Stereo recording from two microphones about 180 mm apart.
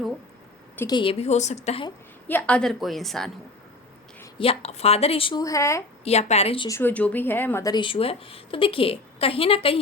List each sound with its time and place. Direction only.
0.9 s a woman's voice: 25° left (ahead or behind)
2.2 s a woman's voice: 10° left (ahead or behind)
4.4 s a woman's voice: 35° left (ahead or behind); by 5.8 s 15° left (ahead or behind)
6.1 s a woman's voice: 35° left (ahead or behind)
6.7 s speech: 10° left (ahead or behind); by 9.7 s 30° left (ahead or behind)